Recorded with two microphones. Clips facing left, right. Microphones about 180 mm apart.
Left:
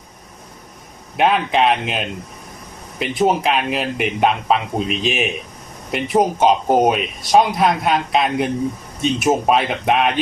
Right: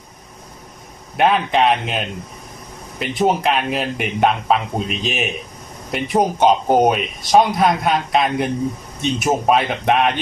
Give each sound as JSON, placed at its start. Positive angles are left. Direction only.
{"t": 1.1, "sound": "speech", "side_deg": 0}